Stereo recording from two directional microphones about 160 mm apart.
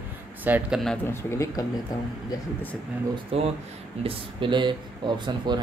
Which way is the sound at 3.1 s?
35° right (ahead or behind).